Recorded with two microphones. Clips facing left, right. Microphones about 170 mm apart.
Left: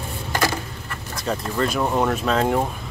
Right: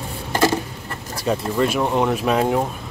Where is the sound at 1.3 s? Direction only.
5° right (ahead or behind).